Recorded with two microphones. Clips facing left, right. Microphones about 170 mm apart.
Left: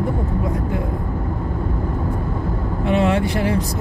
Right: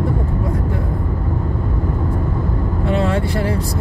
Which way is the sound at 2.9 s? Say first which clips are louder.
Left 2 dB; 15° left (ahead or behind).